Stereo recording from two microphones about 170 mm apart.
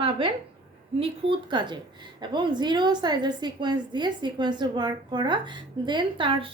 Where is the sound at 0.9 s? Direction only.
30° right (ahead or behind).